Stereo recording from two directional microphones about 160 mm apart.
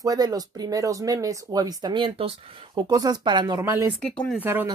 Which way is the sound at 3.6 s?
15° right (ahead or behind).